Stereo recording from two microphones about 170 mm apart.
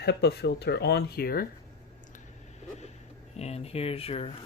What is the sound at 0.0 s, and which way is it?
Speech, 75° left (ahead or behind).